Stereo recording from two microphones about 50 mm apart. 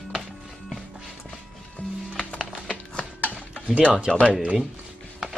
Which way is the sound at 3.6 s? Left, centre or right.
Right.